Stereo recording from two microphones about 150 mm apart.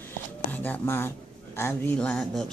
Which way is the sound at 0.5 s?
10° left (ahead or behind).